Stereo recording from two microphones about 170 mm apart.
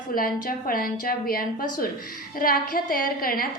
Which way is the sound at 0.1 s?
55° left (ahead or behind).